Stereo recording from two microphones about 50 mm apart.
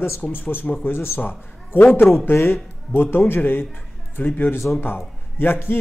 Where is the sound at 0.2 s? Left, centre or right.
Left.